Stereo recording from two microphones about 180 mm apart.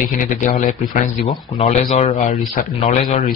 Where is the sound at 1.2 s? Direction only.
35° left (ahead or behind).